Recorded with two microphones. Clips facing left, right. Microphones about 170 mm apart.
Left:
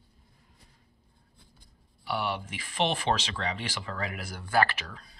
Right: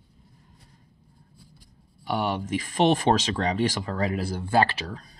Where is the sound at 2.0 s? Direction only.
40° right (ahead or behind).